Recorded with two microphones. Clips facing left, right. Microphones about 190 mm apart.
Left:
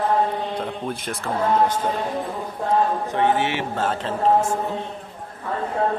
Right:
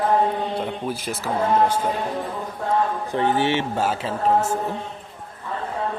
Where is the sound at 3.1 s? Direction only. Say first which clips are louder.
Right 1 dB; 35° right (ahead or behind).